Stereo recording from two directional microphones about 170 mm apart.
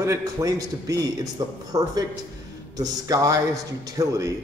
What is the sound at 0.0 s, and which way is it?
A man's voice, 20° right (ahead or behind).